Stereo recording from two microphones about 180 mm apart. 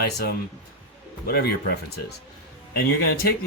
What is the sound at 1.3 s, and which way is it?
Speech, 65° left (ahead or behind).